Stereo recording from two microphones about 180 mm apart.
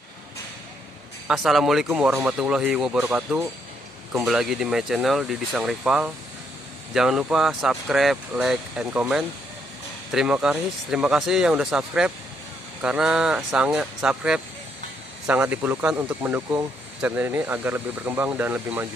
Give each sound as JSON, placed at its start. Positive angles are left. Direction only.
{"t": 1.2, "sound": "speech", "side_deg": 0}